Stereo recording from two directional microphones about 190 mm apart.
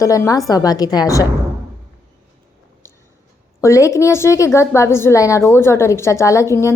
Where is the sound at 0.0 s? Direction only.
15° left (ahead or behind).